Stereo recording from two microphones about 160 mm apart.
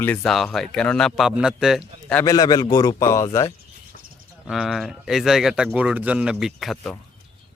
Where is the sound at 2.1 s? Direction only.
20° left (ahead or behind).